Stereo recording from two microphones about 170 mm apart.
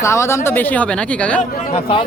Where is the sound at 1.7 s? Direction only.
30° left (ahead or behind).